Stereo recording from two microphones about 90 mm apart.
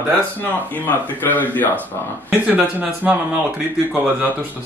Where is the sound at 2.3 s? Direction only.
20° right (ahead or behind).